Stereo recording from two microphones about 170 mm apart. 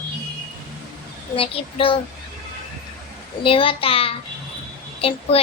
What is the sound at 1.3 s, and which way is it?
Speech, 30° left (ahead or behind).